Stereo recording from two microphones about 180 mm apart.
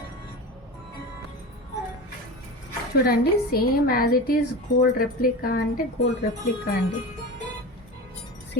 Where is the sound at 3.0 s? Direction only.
55° left (ahead or behind).